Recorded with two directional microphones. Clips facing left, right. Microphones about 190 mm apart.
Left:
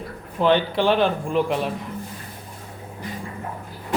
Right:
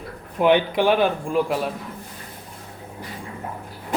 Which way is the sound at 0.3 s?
15° right (ahead or behind).